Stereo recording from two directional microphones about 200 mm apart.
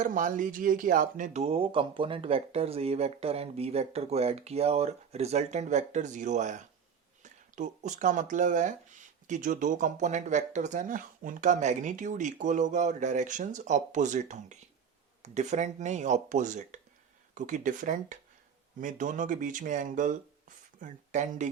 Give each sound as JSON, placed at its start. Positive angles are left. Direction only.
{"t": 0.0, "sound": "speech", "side_deg": -40}